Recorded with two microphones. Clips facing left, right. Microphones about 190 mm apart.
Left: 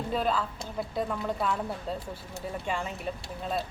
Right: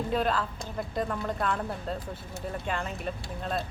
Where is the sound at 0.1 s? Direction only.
Centre (ahead or behind).